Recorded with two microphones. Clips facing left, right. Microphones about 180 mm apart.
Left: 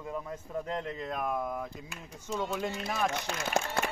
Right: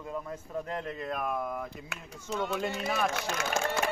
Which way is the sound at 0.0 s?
5° left (ahead or behind).